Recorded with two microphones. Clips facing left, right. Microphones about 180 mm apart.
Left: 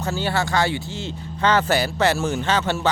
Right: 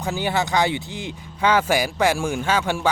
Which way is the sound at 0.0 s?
15° right (ahead or behind).